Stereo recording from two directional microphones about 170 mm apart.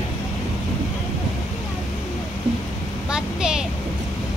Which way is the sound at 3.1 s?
5° right (ahead or behind).